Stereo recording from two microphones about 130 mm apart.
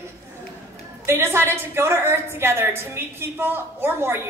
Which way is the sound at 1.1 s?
20° right (ahead or behind).